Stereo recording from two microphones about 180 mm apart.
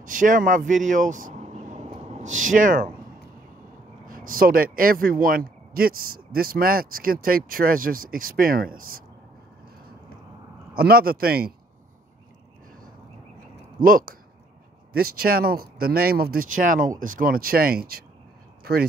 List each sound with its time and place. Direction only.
0.0 s speech: 45° right (ahead or behind)
4.0 s speech: 50° right (ahead or behind)
10.7 s speech: 55° right (ahead or behind)
13.7 s speech: 50° right (ahead or behind)
18.6 s a sound: 55° right (ahead or behind)